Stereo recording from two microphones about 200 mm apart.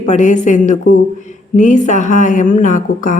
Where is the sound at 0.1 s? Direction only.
40° left (ahead or behind).